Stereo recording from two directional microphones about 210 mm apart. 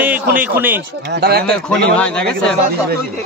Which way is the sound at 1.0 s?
50° right (ahead or behind).